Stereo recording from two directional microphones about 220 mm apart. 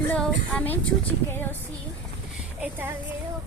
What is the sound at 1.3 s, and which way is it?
Speech, 10° left (ahead or behind).